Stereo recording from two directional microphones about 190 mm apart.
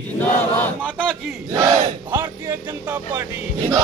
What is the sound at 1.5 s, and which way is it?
Speech, 20° right (ahead or behind).